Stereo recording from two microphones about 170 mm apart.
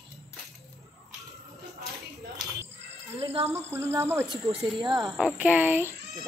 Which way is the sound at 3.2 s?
35° right (ahead or behind).